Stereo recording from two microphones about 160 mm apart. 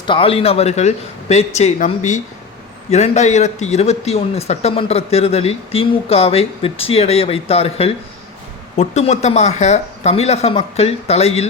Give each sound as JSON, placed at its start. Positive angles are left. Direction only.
{"t": 0.0, "sound": "speech", "side_deg": 30}